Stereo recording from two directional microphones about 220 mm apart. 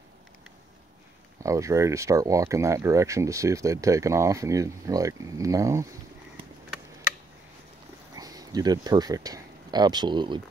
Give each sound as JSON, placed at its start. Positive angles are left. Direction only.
{"t": 1.4, "sound": "speech", "side_deg": -15}
{"t": 8.1, "sound": "speech", "side_deg": -15}